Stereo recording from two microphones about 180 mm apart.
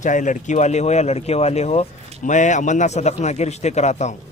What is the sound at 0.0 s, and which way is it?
Speech, 45° left (ahead or behind).